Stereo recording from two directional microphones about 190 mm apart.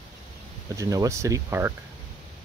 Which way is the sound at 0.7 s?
15° right (ahead or behind).